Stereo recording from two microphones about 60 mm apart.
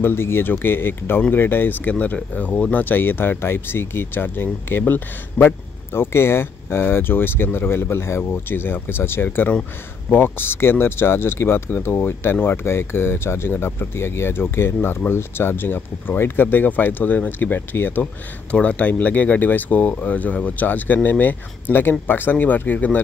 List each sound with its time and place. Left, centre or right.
0.0 s speech: left
18.5 s speech: left